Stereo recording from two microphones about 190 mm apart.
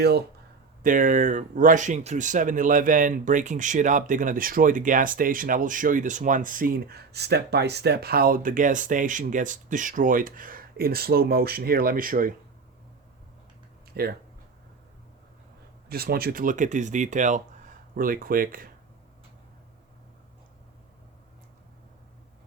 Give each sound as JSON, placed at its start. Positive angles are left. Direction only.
{"t": 0.8, "sound": "speech", "side_deg": -45}
{"t": 13.9, "sound": "speech", "side_deg": -55}
{"t": 15.9, "sound": "speech", "side_deg": -55}